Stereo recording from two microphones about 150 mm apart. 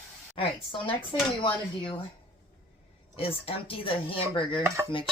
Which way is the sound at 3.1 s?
40° left (ahead or behind).